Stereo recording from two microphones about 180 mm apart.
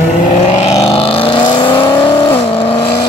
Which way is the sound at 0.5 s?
35° left (ahead or behind).